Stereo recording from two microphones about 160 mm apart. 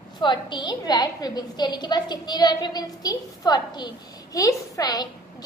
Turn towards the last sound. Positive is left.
turn(degrees=25)  # may be behind; listen again after turning